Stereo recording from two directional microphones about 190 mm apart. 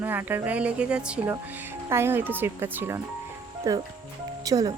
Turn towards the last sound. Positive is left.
turn(degrees=-20)  # may be behind; listen again after turning